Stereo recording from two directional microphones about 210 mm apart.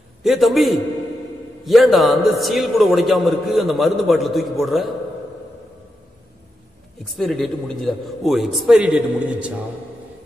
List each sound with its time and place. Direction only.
0.2 s a man's voice: centre (ahead or behind)
7.2 s a man's voice: centre (ahead or behind)